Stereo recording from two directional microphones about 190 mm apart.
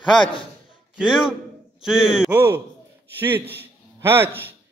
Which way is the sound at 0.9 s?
5° right (ahead or behind).